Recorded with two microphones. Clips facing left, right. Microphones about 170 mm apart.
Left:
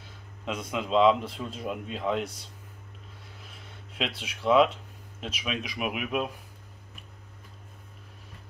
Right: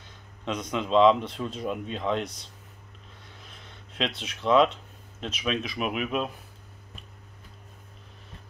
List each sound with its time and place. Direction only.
0.5 s speech: 5° left (ahead or behind)
3.4 s a sound: 5° left (ahead or behind)
5.2 s speech: 10° left (ahead or behind)